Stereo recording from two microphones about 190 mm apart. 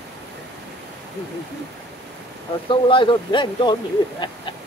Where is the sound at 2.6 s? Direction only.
25° left (ahead or behind).